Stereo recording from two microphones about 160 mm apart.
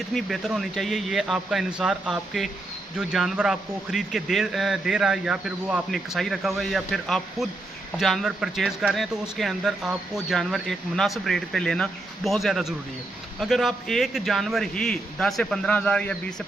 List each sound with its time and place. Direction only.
0.1 s speech: centre (ahead or behind)